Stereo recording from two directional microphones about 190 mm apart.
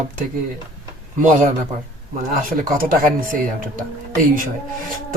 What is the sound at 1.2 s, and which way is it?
Speech, 40° right (ahead or behind).